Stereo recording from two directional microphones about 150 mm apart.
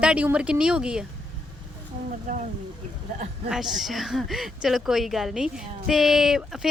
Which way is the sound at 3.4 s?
5° right (ahead or behind).